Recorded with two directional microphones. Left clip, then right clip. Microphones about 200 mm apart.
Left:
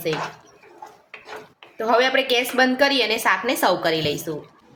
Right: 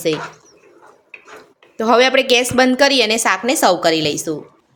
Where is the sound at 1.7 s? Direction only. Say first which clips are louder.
Right 6 dB; 55° right (ahead or behind).